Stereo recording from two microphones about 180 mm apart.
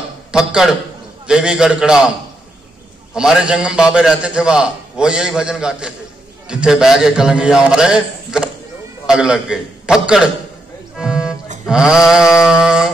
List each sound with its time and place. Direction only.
0.3 s a man's voice: 5° right (ahead or behind)
3.2 s a man's voice: 5° right (ahead or behind)
11.0 s music: 5° right (ahead or behind)
11.6 s a man's voice: 5° right (ahead or behind)